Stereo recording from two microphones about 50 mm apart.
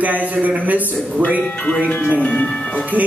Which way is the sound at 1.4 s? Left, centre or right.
Left.